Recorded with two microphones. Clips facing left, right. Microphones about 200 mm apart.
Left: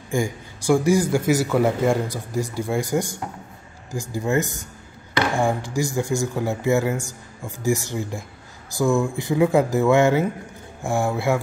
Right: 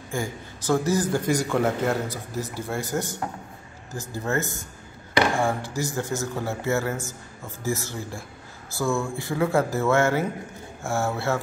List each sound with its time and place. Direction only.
0.1 s a man's voice: 15° left (ahead or behind)